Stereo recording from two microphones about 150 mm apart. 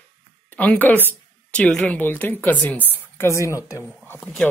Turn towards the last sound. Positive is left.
turn(degrees=0)  # may be behind; listen again after turning